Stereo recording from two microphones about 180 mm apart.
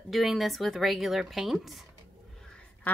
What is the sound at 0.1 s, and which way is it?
A woman's voice, centre (ahead or behind).